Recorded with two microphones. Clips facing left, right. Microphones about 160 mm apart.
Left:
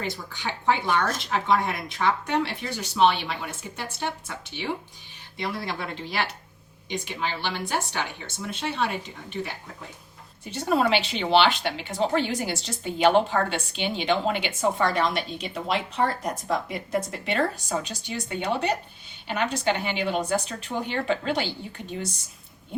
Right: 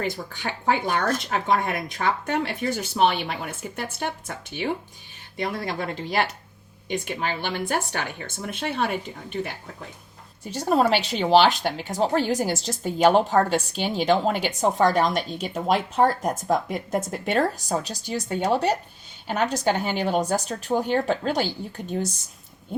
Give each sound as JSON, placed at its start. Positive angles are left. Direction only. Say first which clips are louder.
{"t": 0.3, "sound": "speech", "louder": "even", "side_deg": -45}
{"t": 10.5, "sound": "speech", "louder": "right 2 dB", "side_deg": -40}